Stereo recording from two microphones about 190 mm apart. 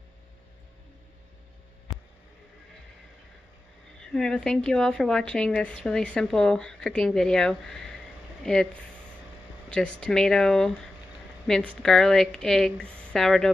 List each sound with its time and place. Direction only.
4.0 s a woman's voice: 5° left (ahead or behind)